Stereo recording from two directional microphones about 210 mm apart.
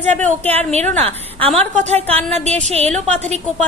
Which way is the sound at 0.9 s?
30° right (ahead or behind).